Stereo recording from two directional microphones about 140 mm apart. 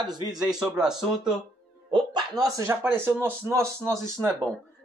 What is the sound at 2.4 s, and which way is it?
Speech, 20° right (ahead or behind).